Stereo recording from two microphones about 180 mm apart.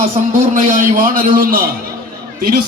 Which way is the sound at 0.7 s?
50° right (ahead or behind).